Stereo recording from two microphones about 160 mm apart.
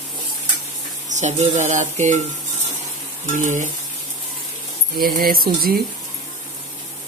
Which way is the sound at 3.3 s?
50° right (ahead or behind).